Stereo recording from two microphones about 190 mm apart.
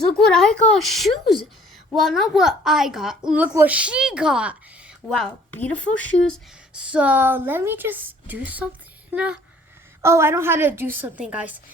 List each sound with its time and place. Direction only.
0.2 s a woman's voice: 5° left (ahead or behind)